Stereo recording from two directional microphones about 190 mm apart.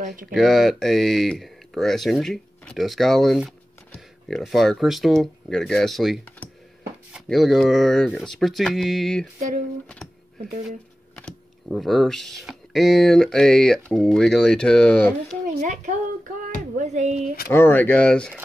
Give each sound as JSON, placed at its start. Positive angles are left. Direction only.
{"t": 0.3, "sound": "speech", "side_deg": 0}
{"t": 11.1, "sound": "speech", "side_deg": 5}
{"t": 15.6, "sound": "speech", "side_deg": -40}
{"t": 17.5, "sound": "speech", "side_deg": 10}